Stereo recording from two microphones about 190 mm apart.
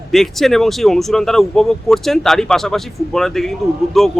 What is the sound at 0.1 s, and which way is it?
Speech, centre (ahead or behind).